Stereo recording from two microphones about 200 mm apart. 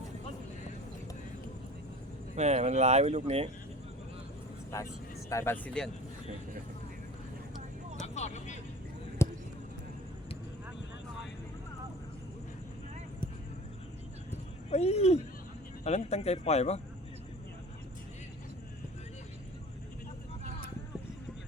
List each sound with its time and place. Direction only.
2.3 s speech: 35° right (ahead or behind)
4.7 s speech: 15° left (ahead or behind)
8.0 s vehicle: 35° left (ahead or behind)
9.2 s basketball bounce: 15° left (ahead or behind)
14.7 s a sound: 30° left (ahead or behind)
15.8 s speech: 35° left (ahead or behind)